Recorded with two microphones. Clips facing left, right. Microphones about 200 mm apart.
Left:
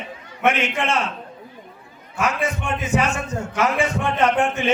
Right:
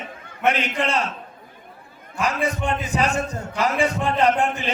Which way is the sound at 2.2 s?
35° right (ahead or behind).